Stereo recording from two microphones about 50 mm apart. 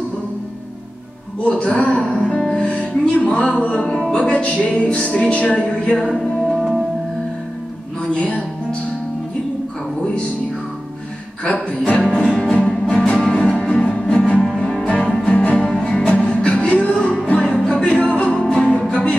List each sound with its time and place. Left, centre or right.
1.4 s music: left
6.1 s music: centre
8.1 s music: centre
11.4 s music: left
12.0 s music: centre
14.4 s cello: centre
15.5 s music: centre
18.4 s music: centre